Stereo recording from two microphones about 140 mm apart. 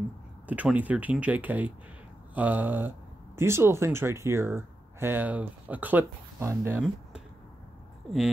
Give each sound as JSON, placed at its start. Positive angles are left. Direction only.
{"t": 0.5, "sound": "speech", "side_deg": -10}